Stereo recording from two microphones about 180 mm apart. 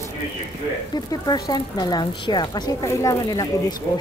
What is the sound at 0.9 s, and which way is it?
Speech, 20° left (ahead or behind).